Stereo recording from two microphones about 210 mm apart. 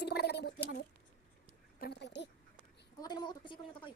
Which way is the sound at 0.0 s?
50° left (ahead or behind).